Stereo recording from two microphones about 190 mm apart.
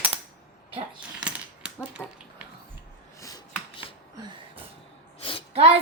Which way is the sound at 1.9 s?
5° right (ahead or behind).